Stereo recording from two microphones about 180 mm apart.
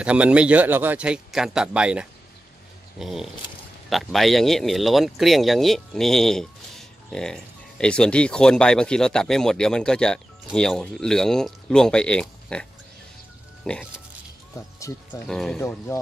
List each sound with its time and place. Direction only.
0.0 s speech: 5° right (ahead or behind)
13.7 s speech: 5° left (ahead or behind)
14.5 s music: 15° left (ahead or behind)
15.2 s speech: 5° left (ahead or behind)
15.6 s speech: 15° left (ahead or behind)